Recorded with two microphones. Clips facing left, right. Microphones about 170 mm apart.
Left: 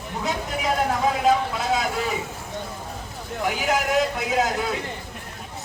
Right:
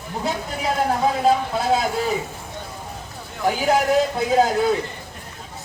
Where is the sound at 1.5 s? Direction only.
30° right (ahead or behind).